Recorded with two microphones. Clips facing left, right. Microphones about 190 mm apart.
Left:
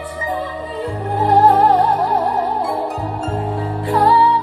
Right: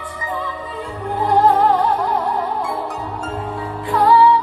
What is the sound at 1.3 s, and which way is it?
Music, 35° left (ahead or behind).